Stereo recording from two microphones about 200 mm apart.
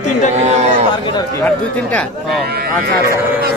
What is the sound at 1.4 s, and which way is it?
A man's voice, 10° left (ahead or behind).